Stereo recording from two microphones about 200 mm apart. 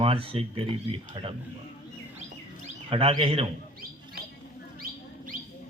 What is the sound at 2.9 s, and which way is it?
Speech, 30° right (ahead or behind).